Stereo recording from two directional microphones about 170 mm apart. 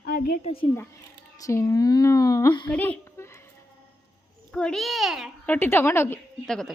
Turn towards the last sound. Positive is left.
turn(degrees=5)  # may be behind; listen again after turning